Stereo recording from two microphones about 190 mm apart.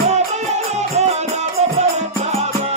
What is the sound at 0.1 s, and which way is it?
Music, 35° right (ahead or behind).